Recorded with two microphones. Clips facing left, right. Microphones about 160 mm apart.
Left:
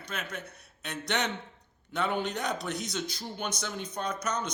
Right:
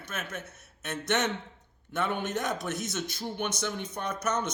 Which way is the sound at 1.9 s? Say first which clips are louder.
Even; 50° right (ahead or behind).